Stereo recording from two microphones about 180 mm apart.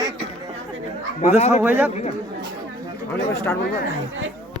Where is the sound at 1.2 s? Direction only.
35° left (ahead or behind).